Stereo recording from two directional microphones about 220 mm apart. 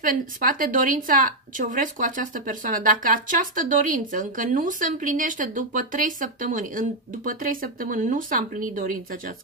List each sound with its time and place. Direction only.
0.0 s speech: 40° right (ahead or behind)